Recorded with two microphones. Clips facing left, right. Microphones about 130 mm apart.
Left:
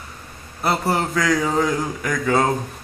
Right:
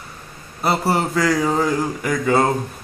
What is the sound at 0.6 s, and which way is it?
Speech, 5° right (ahead or behind).